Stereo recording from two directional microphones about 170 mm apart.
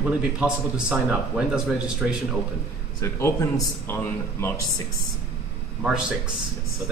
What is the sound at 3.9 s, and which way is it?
Speech, 15° left (ahead or behind).